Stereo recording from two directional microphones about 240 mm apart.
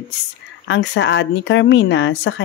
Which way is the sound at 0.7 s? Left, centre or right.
Left.